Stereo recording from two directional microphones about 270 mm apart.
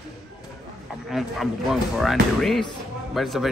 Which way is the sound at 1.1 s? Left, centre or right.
Centre.